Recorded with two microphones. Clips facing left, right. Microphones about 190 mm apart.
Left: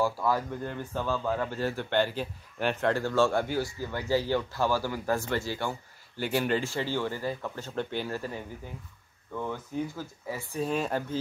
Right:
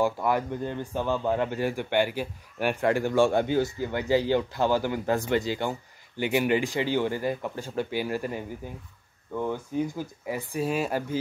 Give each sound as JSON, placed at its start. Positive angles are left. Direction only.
{"t": 0.0, "sound": "a man's voice", "side_deg": -20}